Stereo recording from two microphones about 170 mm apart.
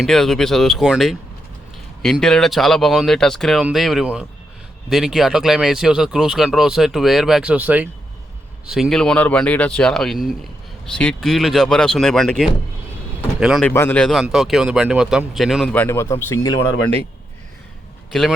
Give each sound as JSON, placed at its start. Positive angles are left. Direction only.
{"t": 0.0, "sound": "speech", "side_deg": 0}
{"t": 13.7, "sound": "speech", "side_deg": 10}
{"t": 15.7, "sound": "speech", "side_deg": 10}
{"t": 18.1, "sound": "speech", "side_deg": 0}